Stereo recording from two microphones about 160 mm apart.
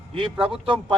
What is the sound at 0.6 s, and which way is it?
Speech, 35° right (ahead or behind).